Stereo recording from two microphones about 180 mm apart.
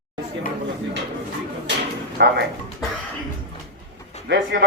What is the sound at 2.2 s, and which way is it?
Speech, 65° right (ahead or behind).